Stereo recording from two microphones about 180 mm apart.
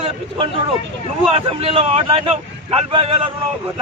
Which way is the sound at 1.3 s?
30° right (ahead or behind).